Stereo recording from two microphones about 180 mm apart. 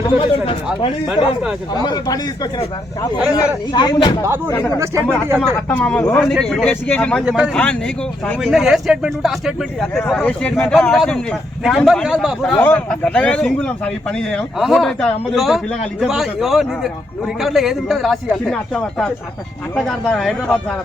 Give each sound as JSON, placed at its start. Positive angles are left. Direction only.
{"t": 0.0, "sound": "speech", "side_deg": 30}
{"t": 1.8, "sound": "speech", "side_deg": 20}
{"t": 4.5, "sound": "a man's voice", "side_deg": 10}
{"t": 7.3, "sound": "a man's voice", "side_deg": -5}
{"t": 12.5, "sound": "a man's voice", "side_deg": 10}